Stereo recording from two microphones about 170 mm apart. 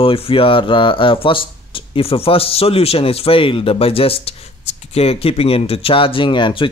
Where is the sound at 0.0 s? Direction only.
30° left (ahead or behind).